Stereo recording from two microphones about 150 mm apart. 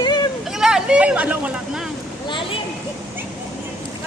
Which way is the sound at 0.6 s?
5° right (ahead or behind).